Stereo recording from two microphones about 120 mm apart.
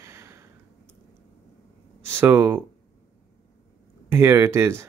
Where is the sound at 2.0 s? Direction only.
20° right (ahead or behind).